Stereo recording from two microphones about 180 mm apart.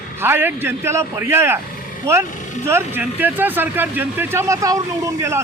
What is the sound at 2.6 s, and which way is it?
A man's voice, 15° right (ahead or behind).